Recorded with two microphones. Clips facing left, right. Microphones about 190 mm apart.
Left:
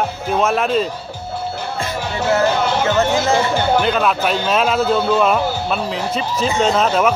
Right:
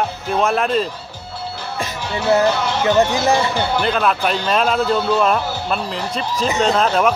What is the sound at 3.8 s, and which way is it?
Speech, centre (ahead or behind).